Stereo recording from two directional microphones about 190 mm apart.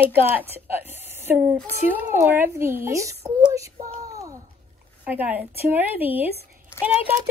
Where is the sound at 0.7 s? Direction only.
10° right (ahead or behind).